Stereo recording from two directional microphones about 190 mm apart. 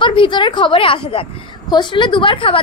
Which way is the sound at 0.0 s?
25° left (ahead or behind).